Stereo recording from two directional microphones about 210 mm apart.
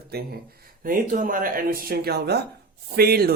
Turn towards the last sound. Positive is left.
turn(degrees=-45)  # may be behind; listen again after turning